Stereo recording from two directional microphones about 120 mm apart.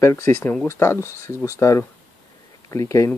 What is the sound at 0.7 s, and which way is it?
Speech, 20° left (ahead or behind).